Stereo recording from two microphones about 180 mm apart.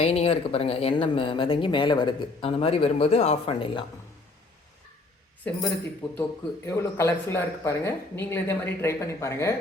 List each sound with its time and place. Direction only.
0.0 s speech: 35° left (ahead or behind)
5.5 s speech: 10° left (ahead or behind)
6.7 s speech: 15° left (ahead or behind)